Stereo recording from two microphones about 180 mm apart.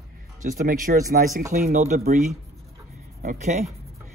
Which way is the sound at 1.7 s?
40° right (ahead or behind).